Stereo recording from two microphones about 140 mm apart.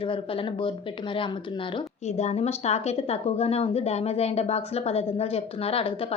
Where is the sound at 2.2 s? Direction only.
50° left (ahead or behind).